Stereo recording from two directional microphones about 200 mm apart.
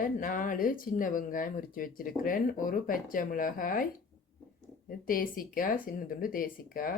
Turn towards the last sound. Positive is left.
turn(degrees=45)  # may be behind; listen again after turning